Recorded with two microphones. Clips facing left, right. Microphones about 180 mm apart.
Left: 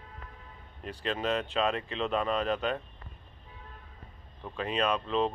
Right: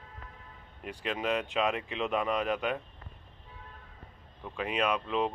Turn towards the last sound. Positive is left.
turn(degrees=-10)  # may be behind; listen again after turning